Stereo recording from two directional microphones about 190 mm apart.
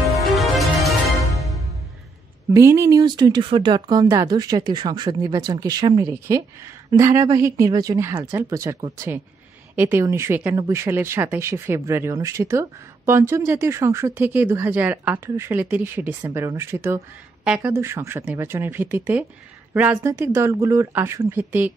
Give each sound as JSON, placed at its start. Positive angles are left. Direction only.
{"t": 0.3, "sound": "music", "side_deg": 0}
{"t": 2.5, "sound": "speech", "side_deg": -15}